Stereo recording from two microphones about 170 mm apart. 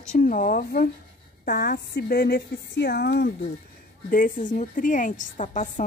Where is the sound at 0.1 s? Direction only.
50° left (ahead or behind); by 3.5 s 70° left (ahead or behind).